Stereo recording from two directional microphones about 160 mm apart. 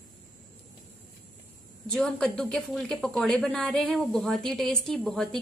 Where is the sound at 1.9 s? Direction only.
5° left (ahead or behind).